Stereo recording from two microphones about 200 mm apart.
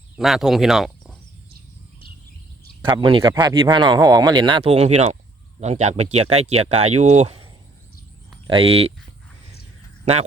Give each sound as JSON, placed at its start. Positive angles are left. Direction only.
{"t": 0.2, "sound": "speech", "side_deg": 0}
{"t": 2.8, "sound": "speech", "side_deg": -25}
{"t": 8.4, "sound": "speech", "side_deg": -30}